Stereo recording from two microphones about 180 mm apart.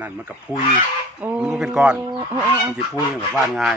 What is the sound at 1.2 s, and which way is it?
Speech, 5° right (ahead or behind).